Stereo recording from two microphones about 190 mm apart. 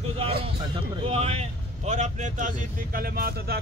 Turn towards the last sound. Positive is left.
turn(degrees=-55)  # may be behind; listen again after turning